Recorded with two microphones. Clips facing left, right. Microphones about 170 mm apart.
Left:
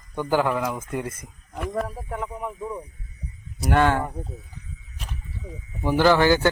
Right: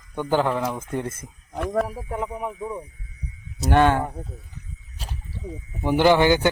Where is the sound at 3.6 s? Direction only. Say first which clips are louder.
Right 2 dB; 20° right (ahead or behind).